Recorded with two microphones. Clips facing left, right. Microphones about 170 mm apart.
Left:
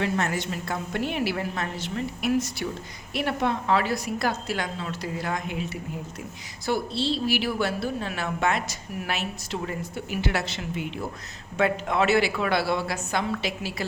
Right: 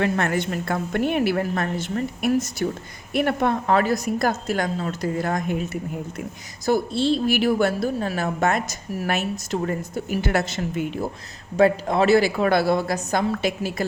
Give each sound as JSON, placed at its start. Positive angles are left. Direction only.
{"t": 0.0, "sound": "a woman's voice", "side_deg": -55}